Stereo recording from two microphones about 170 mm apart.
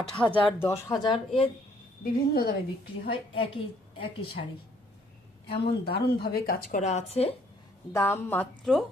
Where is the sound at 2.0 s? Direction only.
65° left (ahead or behind).